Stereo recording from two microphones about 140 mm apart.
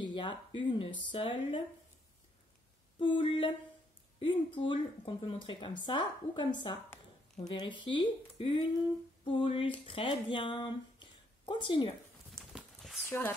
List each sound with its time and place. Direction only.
0.0 s speech: 35° left (ahead or behind)
3.0 s speech: 35° left (ahead or behind)
12.3 s a sound: centre (ahead or behind)
13.0 s speech: 20° left (ahead or behind)